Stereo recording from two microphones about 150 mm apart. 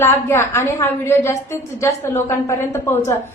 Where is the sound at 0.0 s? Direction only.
15° left (ahead or behind).